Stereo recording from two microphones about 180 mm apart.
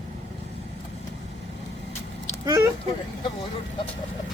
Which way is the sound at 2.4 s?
15° right (ahead or behind).